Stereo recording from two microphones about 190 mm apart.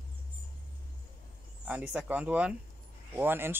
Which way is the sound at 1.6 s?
5° right (ahead or behind).